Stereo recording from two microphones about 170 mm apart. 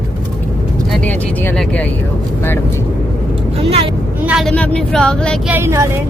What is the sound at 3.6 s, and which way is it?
Speech, 35° right (ahead or behind).